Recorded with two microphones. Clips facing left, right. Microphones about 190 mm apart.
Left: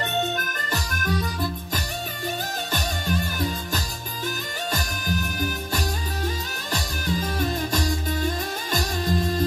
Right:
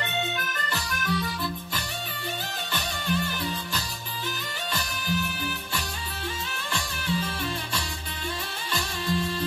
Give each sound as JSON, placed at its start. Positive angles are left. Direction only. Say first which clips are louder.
{"t": 0.0, "sound": "music", "louder": "left 5 dB", "side_deg": 45}